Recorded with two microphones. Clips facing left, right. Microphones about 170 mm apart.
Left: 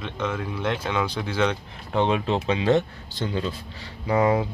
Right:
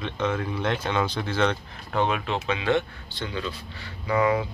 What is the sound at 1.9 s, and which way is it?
Speech, 25° left (ahead or behind).